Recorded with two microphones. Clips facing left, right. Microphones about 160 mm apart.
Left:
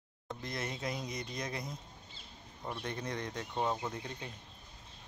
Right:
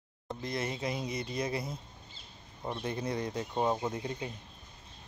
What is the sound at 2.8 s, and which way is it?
Speech, 10° right (ahead or behind).